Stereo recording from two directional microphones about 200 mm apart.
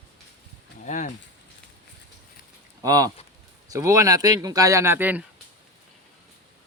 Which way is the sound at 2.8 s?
20° right (ahead or behind).